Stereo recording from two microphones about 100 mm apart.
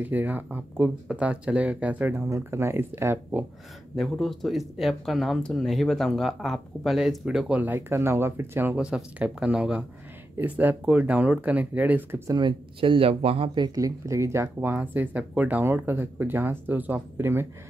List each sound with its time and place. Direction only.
0.0 s speech: 15° right (ahead or behind)
2.2 s speech: 30° right (ahead or behind)
3.9 s speech: centre (ahead or behind); by 8.7 s 20° right (ahead or behind)
8.7 s speech: 10° right (ahead or behind)
12.4 s speech: 55° right (ahead or behind); by 13.5 s 70° right (ahead or behind)
13.6 s speech: 40° right (ahead or behind)